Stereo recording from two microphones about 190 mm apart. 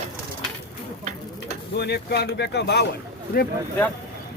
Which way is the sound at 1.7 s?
60° left (ahead or behind).